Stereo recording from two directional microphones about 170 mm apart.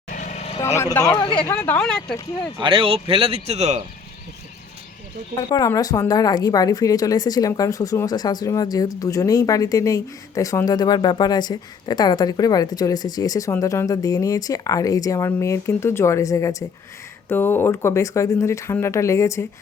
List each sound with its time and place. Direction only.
0.1 s vehicle: 45° left (ahead or behind)
0.6 s speech: 15° left (ahead or behind)
1.2 s speech: 30° left (ahead or behind)
1.5 s speech: 10° left (ahead or behind)
2.6 s speech: 30° right (ahead or behind)
5.4 s speech: 25° left (ahead or behind)